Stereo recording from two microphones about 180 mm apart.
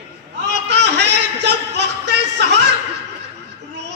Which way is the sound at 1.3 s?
75° right (ahead or behind).